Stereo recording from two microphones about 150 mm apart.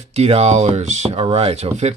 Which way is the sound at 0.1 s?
45° right (ahead or behind).